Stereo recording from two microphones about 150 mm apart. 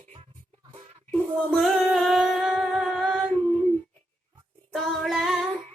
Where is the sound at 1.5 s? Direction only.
Centre (ahead or behind).